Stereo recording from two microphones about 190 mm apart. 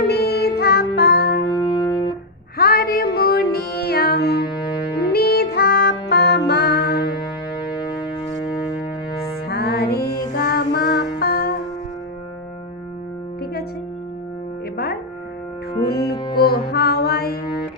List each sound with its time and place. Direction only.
0.1 s music: 55° left (ahead or behind)
1.6 s music: 25° left (ahead or behind)
2.6 s music: 55° left (ahead or behind)
9.5 s music: 55° left (ahead or behind)
15.9 s music: 55° left (ahead or behind)
16.1 s music: 20° left (ahead or behind)
16.4 s music: 55° left (ahead or behind)